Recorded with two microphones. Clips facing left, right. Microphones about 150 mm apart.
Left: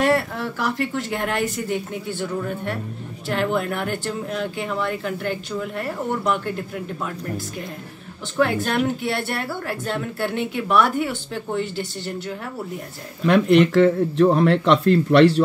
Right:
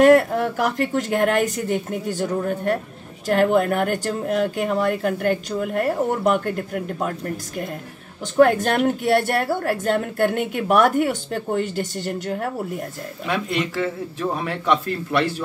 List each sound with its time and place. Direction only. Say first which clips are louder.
0.0 s speech: right 7 dB; 45° right (ahead or behind)
13.3 s speech: left 9 dB; 65° left (ahead or behind)